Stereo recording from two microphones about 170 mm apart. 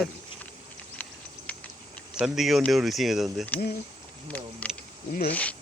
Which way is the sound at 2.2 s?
Centre (ahead or behind).